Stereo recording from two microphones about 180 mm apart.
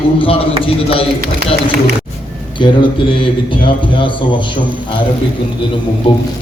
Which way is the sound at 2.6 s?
25° left (ahead or behind).